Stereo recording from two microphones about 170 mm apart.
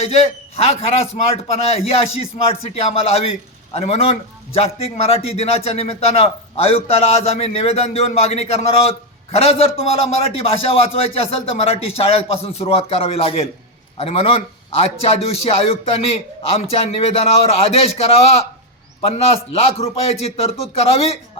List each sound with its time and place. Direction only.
0.0 s a man's voice: 35° left (ahead or behind)